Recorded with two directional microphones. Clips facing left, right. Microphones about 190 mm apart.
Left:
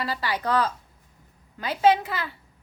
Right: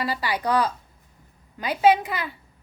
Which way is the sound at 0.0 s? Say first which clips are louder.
Right 2 dB; 10° right (ahead or behind).